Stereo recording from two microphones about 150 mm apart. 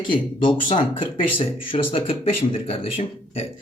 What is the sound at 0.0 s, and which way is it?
Speech, 35° left (ahead or behind).